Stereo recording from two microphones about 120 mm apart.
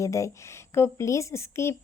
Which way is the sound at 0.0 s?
25° left (ahead or behind).